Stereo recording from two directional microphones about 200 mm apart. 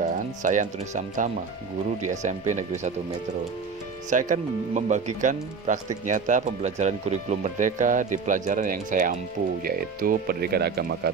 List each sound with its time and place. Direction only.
0.0 s speech: 40° right (ahead or behind)
4.1 s speech: 40° right (ahead or behind)